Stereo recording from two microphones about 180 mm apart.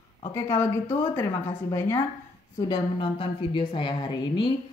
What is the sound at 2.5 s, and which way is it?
A woman's voice, 25° left (ahead or behind).